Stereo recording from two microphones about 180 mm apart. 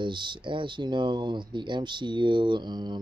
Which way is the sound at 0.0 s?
25° right (ahead or behind).